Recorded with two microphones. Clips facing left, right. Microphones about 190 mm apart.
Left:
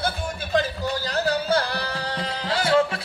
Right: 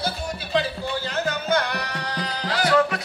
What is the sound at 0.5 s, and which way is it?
Music, 40° left (ahead or behind).